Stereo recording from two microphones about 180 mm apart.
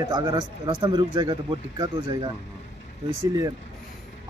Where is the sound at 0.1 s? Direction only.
25° right (ahead or behind).